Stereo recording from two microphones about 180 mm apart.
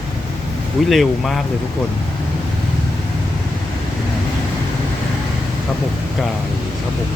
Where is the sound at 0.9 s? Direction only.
Centre (ahead or behind).